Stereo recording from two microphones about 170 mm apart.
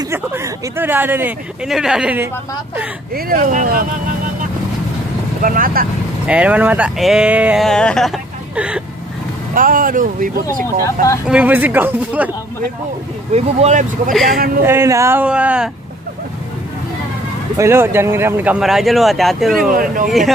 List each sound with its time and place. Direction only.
0.1 s speech: 15° right (ahead or behind)
3.2 s speech: 55° right (ahead or behind)
5.4 s speech: 55° right (ahead or behind)
6.2 s speech: 5° right (ahead or behind)
7.6 s speech: 5° left (ahead or behind)
9.5 s speech: 55° right (ahead or behind)
11.2 s speech: 10° right (ahead or behind)
13.3 s speech: 40° right (ahead or behind)
14.2 s speech: 60° right (ahead or behind)
14.6 s speech: 15° right (ahead or behind)
17.6 s speech: 15° right (ahead or behind)
19.7 s speech: 55° right (ahead or behind)